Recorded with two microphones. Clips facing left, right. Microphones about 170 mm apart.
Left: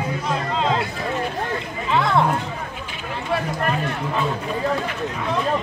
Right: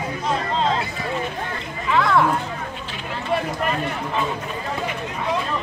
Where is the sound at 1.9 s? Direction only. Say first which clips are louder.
Right 1 dB; 25° left (ahead or behind).